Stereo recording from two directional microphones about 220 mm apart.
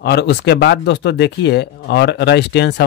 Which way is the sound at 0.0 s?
50° left (ahead or behind).